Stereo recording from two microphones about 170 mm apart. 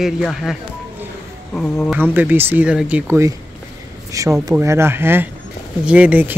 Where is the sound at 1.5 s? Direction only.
5° left (ahead or behind).